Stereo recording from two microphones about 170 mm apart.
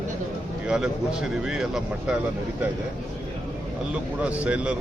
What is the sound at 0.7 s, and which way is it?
Speech, 5° right (ahead or behind).